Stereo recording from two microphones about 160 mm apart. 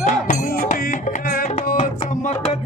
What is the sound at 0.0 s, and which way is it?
Music, 55° left (ahead or behind).